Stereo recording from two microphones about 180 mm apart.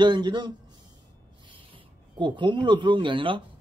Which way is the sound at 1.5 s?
25° right (ahead or behind).